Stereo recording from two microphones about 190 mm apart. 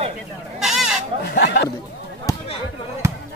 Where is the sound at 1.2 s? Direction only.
60° left (ahead or behind).